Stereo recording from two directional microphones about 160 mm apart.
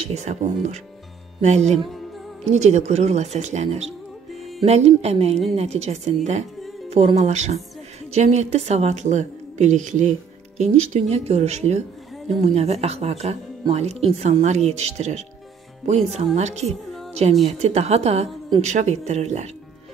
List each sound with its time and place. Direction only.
0.0 s a woman's voice: 50° right (ahead or behind)
16.3 s a woman's voice: 45° right (ahead or behind)